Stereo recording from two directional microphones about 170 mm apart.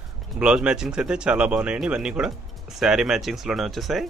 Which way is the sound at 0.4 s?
5° right (ahead or behind).